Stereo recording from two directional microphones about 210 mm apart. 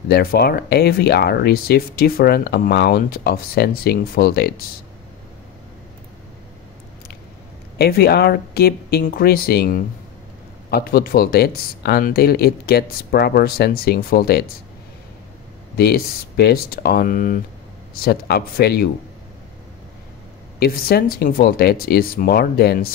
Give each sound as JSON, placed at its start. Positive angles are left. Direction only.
{"t": 0.1, "sound": "speech", "side_deg": 45}
{"t": 7.7, "sound": "speech", "side_deg": 50}
{"t": 15.7, "sound": "speech", "side_deg": 50}
{"t": 20.5, "sound": "speech", "side_deg": 45}